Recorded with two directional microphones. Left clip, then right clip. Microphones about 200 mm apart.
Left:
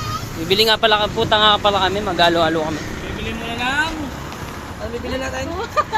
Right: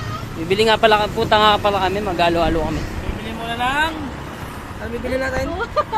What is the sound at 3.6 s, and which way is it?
Vehicle, 30° right (ahead or behind).